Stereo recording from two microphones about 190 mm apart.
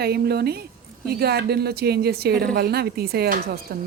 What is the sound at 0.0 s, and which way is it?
Speech, 55° right (ahead or behind).